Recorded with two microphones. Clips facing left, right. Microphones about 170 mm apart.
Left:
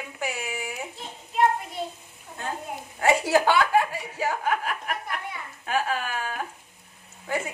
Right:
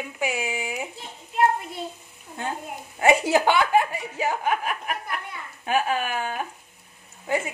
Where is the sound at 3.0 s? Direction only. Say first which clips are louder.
Right 2 dB; 20° right (ahead or behind).